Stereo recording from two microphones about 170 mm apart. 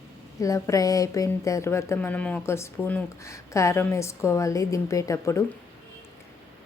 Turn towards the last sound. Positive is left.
turn(degrees=20)  # may be behind; listen again after turning